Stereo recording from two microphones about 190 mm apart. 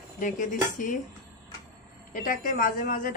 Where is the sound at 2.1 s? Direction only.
45° left (ahead or behind).